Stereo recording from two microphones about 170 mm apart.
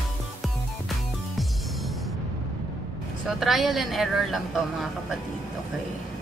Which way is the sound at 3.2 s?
Centre (ahead or behind).